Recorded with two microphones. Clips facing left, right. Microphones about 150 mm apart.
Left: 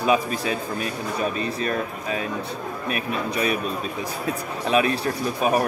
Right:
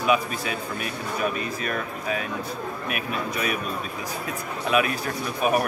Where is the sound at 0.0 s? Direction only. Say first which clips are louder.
Left 2 dB; 30° left (ahead or behind).